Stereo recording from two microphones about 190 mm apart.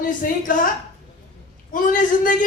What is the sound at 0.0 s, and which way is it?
Speech, 45° left (ahead or behind).